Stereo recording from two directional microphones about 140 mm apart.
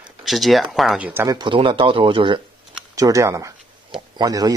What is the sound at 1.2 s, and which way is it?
Speech, 35° right (ahead or behind).